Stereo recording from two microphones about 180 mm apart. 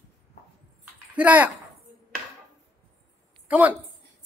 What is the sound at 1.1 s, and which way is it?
Speech, 10° right (ahead or behind).